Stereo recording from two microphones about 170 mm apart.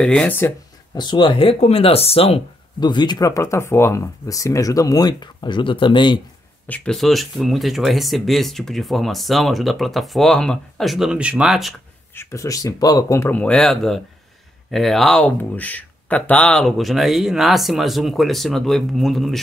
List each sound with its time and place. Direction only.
0.0 s speech: 5° left (ahead or behind)
0.9 s speech: 25° left (ahead or behind)
6.7 s speech: 5° left (ahead or behind)
12.2 s speech: 15° left (ahead or behind); by 19.4 s centre (ahead or behind)